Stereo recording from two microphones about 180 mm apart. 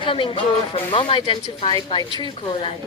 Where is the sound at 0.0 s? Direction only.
30° left (ahead or behind).